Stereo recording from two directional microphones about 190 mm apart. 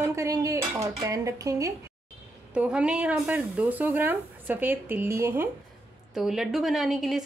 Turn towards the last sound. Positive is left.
turn(degrees=0)  # may be behind; listen again after turning